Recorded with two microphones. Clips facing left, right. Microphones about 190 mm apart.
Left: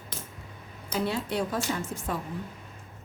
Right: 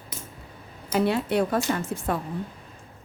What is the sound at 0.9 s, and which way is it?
A woman's voice, 65° right (ahead or behind).